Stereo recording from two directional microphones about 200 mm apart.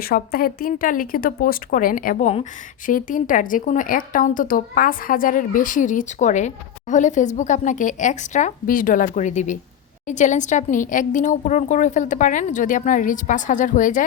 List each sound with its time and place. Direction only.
0.0 s speech: 50° left (ahead or behind)